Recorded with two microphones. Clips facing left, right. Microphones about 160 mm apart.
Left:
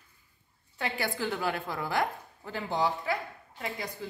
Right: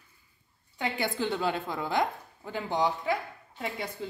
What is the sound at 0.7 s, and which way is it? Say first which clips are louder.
A woman's voice: right 2 dB; 20° right (ahead or behind).